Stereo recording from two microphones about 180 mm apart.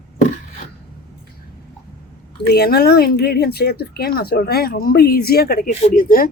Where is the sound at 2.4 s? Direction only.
60° left (ahead or behind).